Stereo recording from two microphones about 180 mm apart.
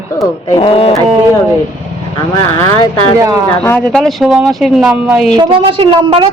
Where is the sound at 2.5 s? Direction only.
15° left (ahead or behind); by 5.3 s 5° right (ahead or behind).